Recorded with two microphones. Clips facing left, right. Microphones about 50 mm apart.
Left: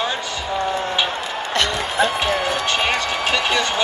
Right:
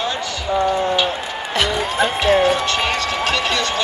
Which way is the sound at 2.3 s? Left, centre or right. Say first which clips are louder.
Right 6 dB; right.